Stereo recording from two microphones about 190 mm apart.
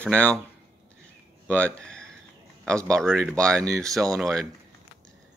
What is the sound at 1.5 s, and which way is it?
Speech, 5° left (ahead or behind).